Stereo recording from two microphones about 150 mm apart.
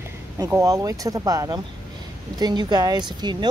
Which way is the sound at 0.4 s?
20° right (ahead or behind).